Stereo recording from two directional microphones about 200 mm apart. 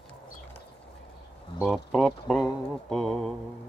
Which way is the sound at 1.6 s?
Centre (ahead or behind).